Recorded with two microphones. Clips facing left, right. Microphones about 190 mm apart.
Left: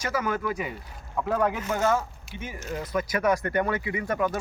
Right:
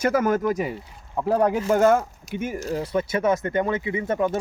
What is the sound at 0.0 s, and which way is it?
Speech, 50° right (ahead or behind).